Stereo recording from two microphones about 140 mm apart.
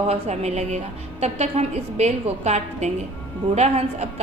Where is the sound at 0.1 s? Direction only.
50° right (ahead or behind).